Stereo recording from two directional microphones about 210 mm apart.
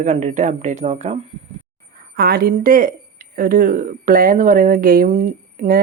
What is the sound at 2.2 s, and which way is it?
Speech, 45° right (ahead or behind).